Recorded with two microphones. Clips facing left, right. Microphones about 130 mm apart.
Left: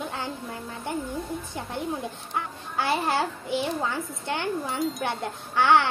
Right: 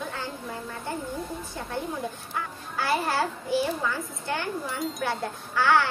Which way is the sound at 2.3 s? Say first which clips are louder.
Left 5 dB; 25° left (ahead or behind).